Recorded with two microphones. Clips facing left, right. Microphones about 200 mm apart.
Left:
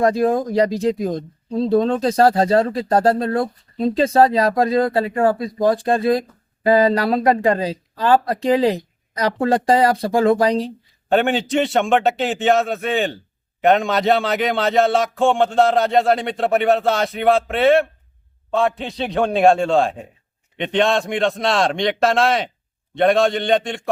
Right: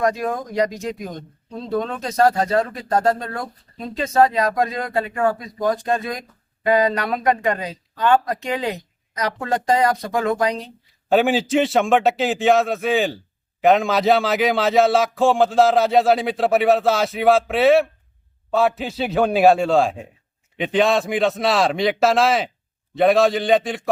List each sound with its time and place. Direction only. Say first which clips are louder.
0.0 s speech: left 5 dB; 30° left (ahead or behind)
11.1 s a man's voice: right 1 dB; centre (ahead or behind)